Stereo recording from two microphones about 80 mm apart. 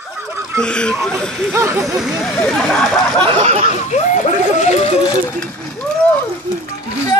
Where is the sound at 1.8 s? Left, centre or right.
Centre.